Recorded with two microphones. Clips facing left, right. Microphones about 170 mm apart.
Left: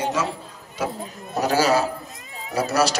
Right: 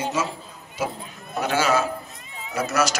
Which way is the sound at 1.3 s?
35° left (ahead or behind).